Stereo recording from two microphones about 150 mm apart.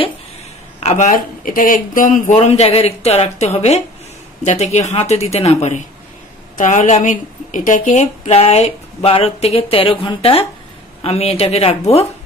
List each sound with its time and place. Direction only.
0.7 s speech: 50° left (ahead or behind)
2.3 s speech: 45° left (ahead or behind)